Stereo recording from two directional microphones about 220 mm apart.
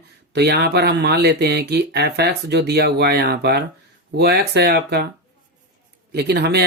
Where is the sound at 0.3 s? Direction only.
50° right (ahead or behind).